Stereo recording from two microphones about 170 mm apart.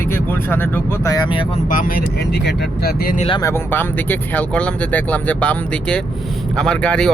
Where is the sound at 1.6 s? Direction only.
50° left (ahead or behind).